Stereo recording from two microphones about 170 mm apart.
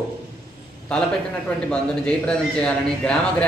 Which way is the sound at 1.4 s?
5° left (ahead or behind).